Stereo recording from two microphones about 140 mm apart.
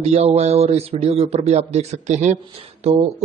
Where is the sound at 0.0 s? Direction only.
50° right (ahead or behind).